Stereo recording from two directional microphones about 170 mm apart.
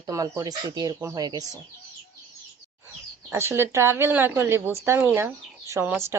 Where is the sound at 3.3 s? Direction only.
15° right (ahead or behind).